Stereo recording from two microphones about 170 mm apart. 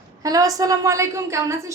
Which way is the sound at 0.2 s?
20° right (ahead or behind).